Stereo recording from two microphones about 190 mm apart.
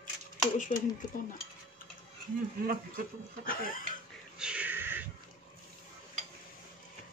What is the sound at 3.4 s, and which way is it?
Speech, 50° left (ahead or behind).